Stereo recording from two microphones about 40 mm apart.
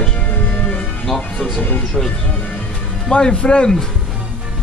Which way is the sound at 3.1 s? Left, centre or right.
Left.